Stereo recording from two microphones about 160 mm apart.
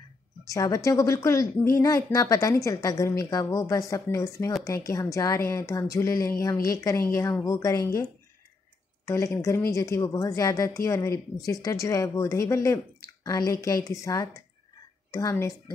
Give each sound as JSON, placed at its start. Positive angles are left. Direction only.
{"t": 0.5, "sound": "a woman's voice", "side_deg": 20}
{"t": 9.0, "sound": "a woman's voice", "side_deg": 20}